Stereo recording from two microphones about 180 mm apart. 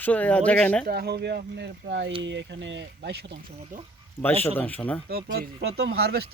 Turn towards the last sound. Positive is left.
turn(degrees=-60)  # may be behind; listen again after turning